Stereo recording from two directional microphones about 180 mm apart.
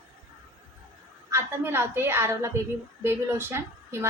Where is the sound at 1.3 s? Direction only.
15° right (ahead or behind).